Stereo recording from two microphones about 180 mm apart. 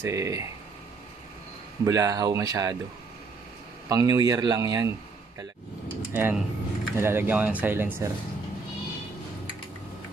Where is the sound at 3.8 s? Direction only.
20° right (ahead or behind).